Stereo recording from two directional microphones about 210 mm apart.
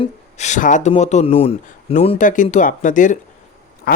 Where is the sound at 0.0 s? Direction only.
35° left (ahead or behind).